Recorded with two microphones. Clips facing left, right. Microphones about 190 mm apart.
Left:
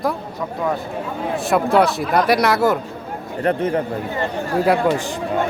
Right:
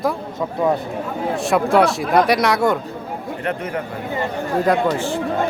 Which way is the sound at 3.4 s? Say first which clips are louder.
Left 8 dB; 30° left (ahead or behind).